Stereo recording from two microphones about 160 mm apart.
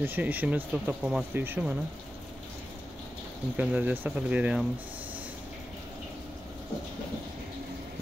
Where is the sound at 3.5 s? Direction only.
10° right (ahead or behind).